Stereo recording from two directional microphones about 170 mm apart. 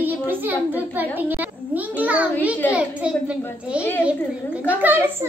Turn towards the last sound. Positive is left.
turn(degrees=-10)  # may be behind; listen again after turning